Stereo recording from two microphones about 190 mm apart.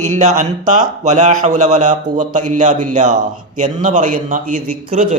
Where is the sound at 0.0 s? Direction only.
40° right (ahead or behind).